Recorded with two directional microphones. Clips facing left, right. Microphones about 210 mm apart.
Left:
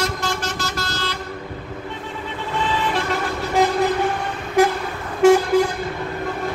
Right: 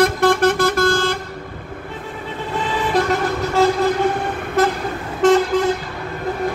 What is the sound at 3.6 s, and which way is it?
Vehicle, 15° left (ahead or behind).